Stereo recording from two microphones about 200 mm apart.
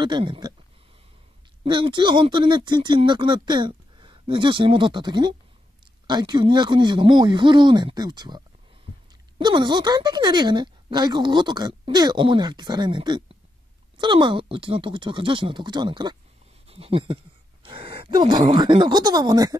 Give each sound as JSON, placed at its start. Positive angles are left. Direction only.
{"t": 0.0, "sound": "speech", "side_deg": -25}
{"t": 1.6, "sound": "speech", "side_deg": -25}
{"t": 9.4, "sound": "speech", "side_deg": -20}